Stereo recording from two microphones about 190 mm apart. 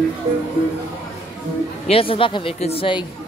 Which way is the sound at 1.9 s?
30° left (ahead or behind).